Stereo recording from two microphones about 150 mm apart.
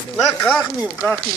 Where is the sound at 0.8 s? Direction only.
5° right (ahead or behind).